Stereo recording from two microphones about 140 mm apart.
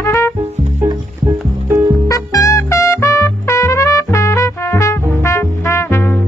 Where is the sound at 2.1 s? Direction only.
25° left (ahead or behind).